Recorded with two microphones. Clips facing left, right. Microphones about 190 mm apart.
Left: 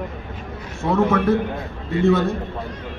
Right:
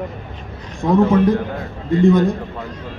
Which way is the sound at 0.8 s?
15° right (ahead or behind).